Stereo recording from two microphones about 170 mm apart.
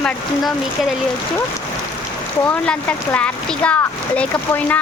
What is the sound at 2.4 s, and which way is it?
Speech, 10° left (ahead or behind).